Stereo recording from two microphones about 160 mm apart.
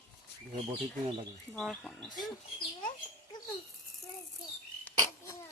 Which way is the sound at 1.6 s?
Centre (ahead or behind).